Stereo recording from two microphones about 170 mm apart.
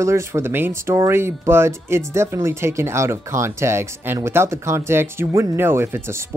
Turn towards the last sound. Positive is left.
turn(degrees=-15)  # may be behind; listen again after turning